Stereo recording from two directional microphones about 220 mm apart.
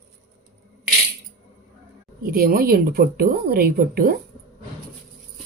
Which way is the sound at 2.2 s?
45° right (ahead or behind).